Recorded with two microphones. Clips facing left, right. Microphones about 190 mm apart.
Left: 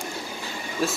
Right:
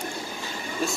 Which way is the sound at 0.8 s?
Centre (ahead or behind).